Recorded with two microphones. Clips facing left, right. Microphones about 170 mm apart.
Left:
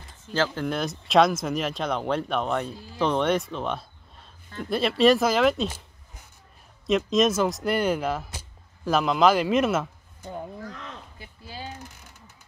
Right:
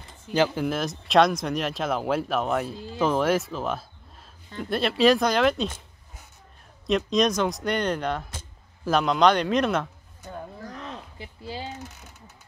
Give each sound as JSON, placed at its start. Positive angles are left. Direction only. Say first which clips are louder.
{"t": 0.3, "sound": "speech", "louder": "right 3 dB", "side_deg": -15}
{"t": 0.7, "sound": "speech", "louder": "right 1 dB", "side_deg": 0}
{"t": 6.9, "sound": "speech", "louder": "left 1 dB", "side_deg": 0}
{"t": 10.7, "sound": "a sound", "louder": "right 3 dB", "side_deg": -25}